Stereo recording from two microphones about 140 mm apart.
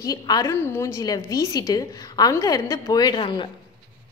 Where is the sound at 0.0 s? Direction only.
25° left (ahead or behind).